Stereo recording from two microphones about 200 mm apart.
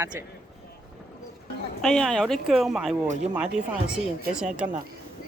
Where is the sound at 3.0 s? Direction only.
35° right (ahead or behind).